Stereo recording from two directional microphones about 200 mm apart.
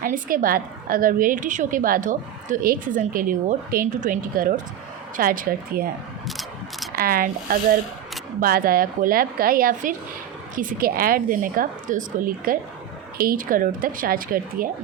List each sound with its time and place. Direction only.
0.0 s a woman's voice: 45° right (ahead or behind)
6.2 s mechanisms: centre (ahead or behind)
6.9 s a woman's voice: 45° right (ahead or behind)